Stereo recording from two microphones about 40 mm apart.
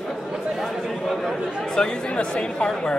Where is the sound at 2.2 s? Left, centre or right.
Left.